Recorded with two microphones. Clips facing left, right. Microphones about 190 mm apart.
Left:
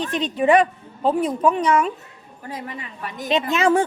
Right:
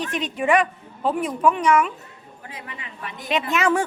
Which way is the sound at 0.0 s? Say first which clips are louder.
Left 4 dB; 35° left (ahead or behind).